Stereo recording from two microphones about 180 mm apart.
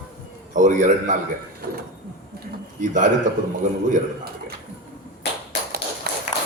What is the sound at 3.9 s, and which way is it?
Speech, 60° right (ahead or behind).